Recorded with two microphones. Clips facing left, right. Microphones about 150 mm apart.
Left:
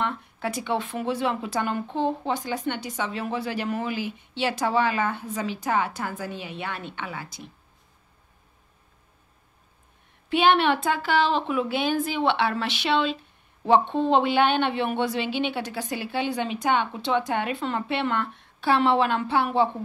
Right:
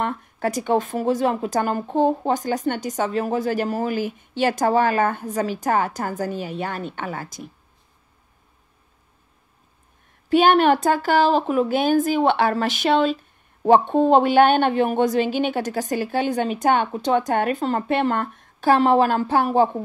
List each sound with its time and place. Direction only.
0.0 s a woman's voice: 45° right (ahead or behind)
10.3 s a woman's voice: 45° right (ahead or behind)